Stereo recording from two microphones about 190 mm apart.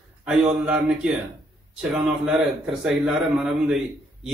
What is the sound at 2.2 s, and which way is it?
A man's voice, 5° right (ahead or behind).